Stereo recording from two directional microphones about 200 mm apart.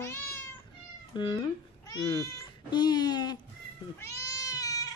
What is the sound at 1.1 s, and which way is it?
Speech, 25° left (ahead or behind).